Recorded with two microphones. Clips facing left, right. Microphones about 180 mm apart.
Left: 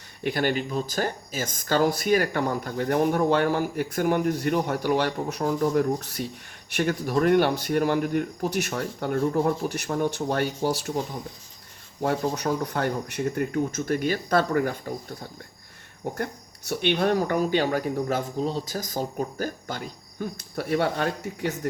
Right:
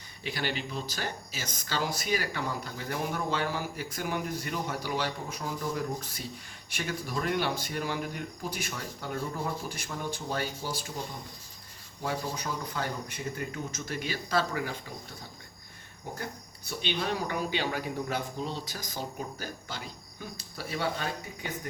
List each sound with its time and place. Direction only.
0.2 s speech: 50° left (ahead or behind)
12.0 s speech: 60° left (ahead or behind)
16.1 s speech: 60° left (ahead or behind)